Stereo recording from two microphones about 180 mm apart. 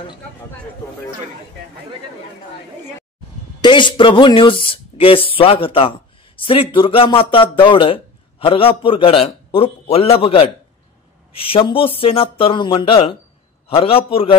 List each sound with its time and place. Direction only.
3.6 s speech: 25° left (ahead or behind)